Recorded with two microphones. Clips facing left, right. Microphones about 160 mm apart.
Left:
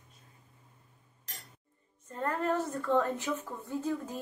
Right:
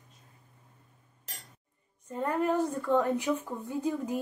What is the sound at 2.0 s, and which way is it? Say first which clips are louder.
A woman's voice: right 3 dB; 10° right (ahead or behind).